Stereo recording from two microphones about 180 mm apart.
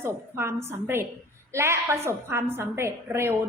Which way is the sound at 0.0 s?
15° right (ahead or behind).